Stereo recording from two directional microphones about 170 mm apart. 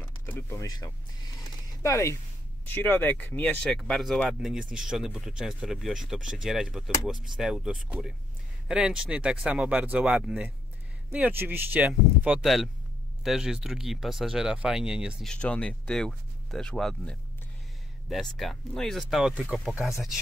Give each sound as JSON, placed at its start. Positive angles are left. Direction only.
{"t": 0.0, "sound": "speech", "side_deg": 10}
{"t": 15.3, "sound": "speech", "side_deg": 5}